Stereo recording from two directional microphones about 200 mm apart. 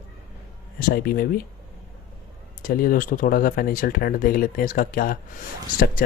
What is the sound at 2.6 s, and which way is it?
Speech, 45° left (ahead or behind).